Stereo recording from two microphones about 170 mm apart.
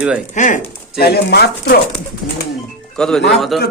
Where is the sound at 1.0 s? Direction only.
65° left (ahead or behind).